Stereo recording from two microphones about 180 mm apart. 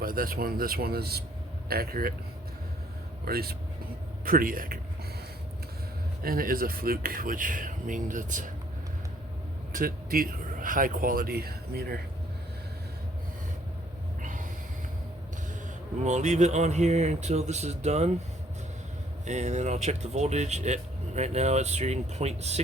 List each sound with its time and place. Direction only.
0.0 s speech: 50° right (ahead or behind)
3.2 s speech: 60° right (ahead or behind)
6.2 s speech: 55° right (ahead or behind)
9.7 s speech: 50° right (ahead or behind)
14.2 s snort: 45° right (ahead or behind)
16.0 s speech: 40° right (ahead or behind)
19.2 s speech: 40° right (ahead or behind)